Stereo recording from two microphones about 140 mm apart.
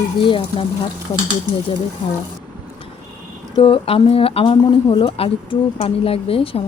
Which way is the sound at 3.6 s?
40° left (ahead or behind).